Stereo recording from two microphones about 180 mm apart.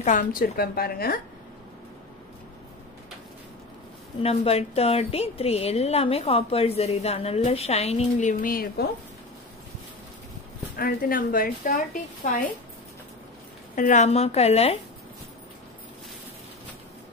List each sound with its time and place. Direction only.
0.0 s a woman's voice: 45° left (ahead or behind)
4.2 s a woman's voice: 35° left (ahead or behind); by 8.8 s 55° left (ahead or behind)
10.8 s a woman's voice: 55° left (ahead or behind)
13.7 s a woman's voice: 40° left (ahead or behind)